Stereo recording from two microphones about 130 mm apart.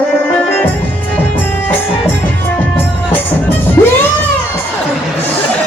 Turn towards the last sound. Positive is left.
turn(degrees=20)  # may be behind; listen again after turning